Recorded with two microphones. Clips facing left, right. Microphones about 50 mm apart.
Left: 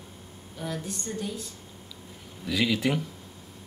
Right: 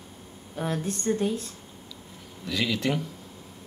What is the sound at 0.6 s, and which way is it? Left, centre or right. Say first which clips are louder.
Speech: right 5 dB; right.